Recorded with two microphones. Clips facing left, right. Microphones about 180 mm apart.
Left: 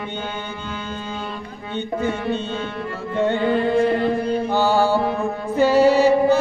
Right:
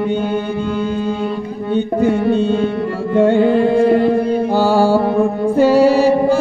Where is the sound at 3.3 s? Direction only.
35° right (ahead or behind).